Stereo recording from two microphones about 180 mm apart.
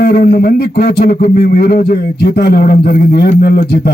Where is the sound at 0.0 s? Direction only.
60° left (ahead or behind).